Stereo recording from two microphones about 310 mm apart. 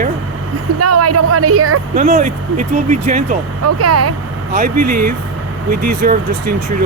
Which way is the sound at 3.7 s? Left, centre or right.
Right.